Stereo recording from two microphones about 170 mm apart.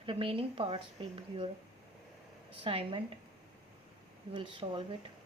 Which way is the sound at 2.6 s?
30° right (ahead or behind).